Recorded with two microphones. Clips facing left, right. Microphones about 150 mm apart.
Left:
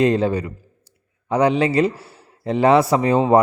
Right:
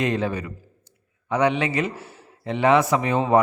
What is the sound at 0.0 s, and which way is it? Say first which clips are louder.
A man's voice: left 6 dB; 35° left (ahead or behind).